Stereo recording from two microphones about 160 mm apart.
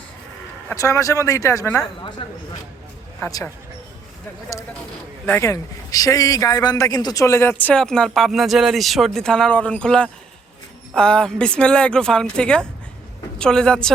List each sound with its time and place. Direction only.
0.7 s speech: 20° left (ahead or behind)
2.0 s speech: 30° left (ahead or behind)
5.2 s a man's voice: 15° left (ahead or behind)